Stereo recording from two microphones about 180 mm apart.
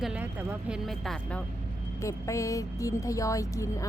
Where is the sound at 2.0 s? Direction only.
15° left (ahead or behind).